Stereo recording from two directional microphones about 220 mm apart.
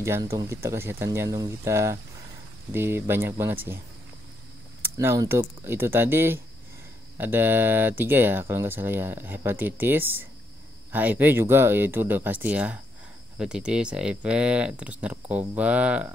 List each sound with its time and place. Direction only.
0.0 s speech: 10° right (ahead or behind)
4.8 s speech: 15° right (ahead or behind)